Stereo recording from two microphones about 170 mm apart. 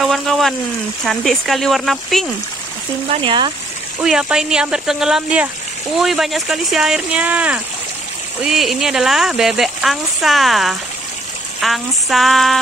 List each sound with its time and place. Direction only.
0.0 s speech: centre (ahead or behind)
3.1 s speech: 30° right (ahead or behind)
4.0 s speech: 5° right (ahead or behind)